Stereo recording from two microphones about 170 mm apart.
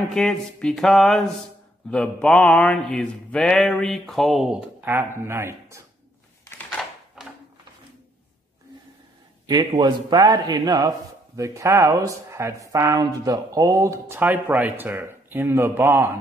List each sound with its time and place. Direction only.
0.1 s mantra: 5° left (ahead or behind); by 5.8 s 15° right (ahead or behind)
6.8 s a sound: centre (ahead or behind)
9.8 s a man's voice: 25° right (ahead or behind)